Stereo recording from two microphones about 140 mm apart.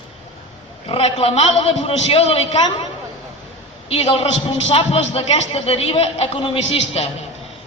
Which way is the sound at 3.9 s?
45° left (ahead or behind).